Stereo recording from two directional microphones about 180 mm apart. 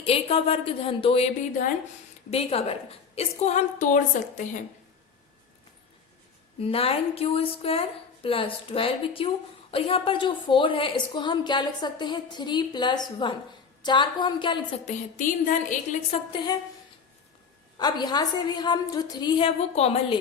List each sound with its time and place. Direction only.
0.0 s a woman's voice: 30° left (ahead or behind)
6.6 s a woman's voice: 35° left (ahead or behind)
14.8 s a woman's voice: 45° left (ahead or behind)
17.7 s a woman's voice: 25° left (ahead or behind)